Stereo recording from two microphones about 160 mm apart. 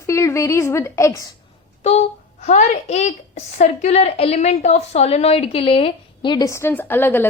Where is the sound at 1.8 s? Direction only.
45° left (ahead or behind).